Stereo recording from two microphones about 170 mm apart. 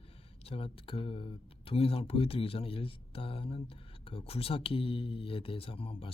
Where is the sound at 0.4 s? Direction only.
35° left (ahead or behind).